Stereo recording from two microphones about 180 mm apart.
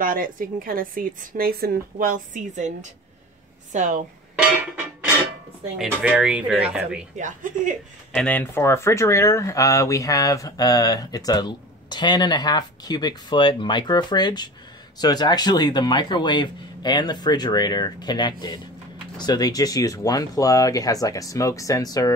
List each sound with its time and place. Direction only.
0.0 s a woman's voice: 50° right (ahead or behind)
5.8 s speech: 5° right (ahead or behind)
7.2 s a woman's voice: 45° right (ahead or behind)
8.1 s speech: 5° left (ahead or behind)